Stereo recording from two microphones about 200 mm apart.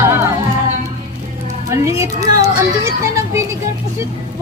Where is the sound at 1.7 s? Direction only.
15° right (ahead or behind).